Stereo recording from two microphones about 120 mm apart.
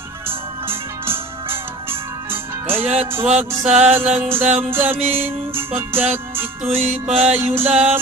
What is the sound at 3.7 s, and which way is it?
Music, 65° right (ahead or behind).